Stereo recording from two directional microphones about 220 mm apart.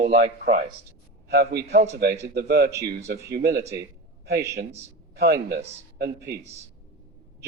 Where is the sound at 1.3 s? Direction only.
45° right (ahead or behind).